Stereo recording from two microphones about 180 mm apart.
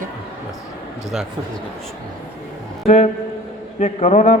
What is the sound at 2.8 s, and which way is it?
A man's voice, 35° left (ahead or behind).